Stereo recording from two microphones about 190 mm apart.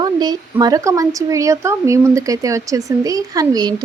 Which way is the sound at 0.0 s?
20° right (ahead or behind).